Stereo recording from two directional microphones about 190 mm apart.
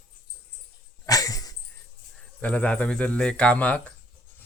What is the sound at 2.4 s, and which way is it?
Speech, 5° left (ahead or behind).